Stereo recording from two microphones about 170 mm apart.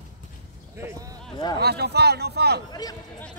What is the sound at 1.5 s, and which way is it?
A man's voice, 70° right (ahead or behind).